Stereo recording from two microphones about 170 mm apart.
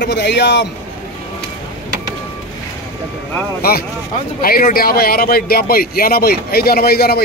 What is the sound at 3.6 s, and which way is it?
Speech, 65° left (ahead or behind).